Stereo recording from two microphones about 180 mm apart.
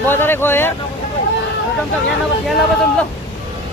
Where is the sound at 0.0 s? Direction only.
10° left (ahead or behind).